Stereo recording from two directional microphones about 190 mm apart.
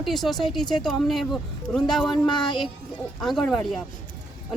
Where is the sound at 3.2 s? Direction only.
Centre (ahead or behind).